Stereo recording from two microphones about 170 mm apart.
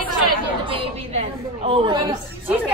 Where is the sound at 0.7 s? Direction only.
35° right (ahead or behind).